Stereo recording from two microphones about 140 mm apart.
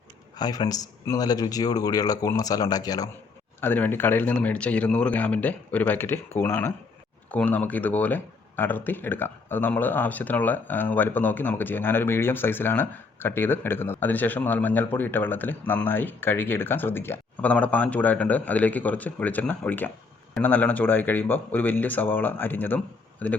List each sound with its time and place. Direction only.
0.3 s speech: 30° left (ahead or behind)
3.6 s speech: 15° left (ahead or behind)